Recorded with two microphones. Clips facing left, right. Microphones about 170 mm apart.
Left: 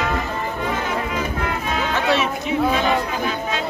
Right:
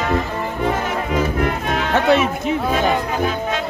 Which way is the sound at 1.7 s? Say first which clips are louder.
Right 4 dB; 55° right (ahead or behind).